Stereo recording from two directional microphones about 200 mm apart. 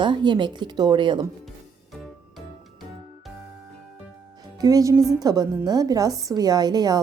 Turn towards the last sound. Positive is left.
turn(degrees=-20)  # may be behind; listen again after turning